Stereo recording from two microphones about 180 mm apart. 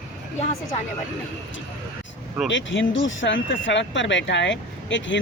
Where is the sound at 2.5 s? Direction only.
90° left.